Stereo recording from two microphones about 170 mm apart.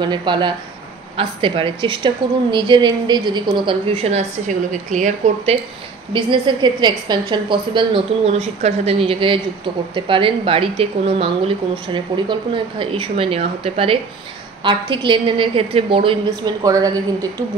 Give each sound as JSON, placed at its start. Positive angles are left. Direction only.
{"t": 0.0, "sound": "a woman's voice", "side_deg": -25}
{"t": 6.1, "sound": "a woman's voice", "side_deg": -30}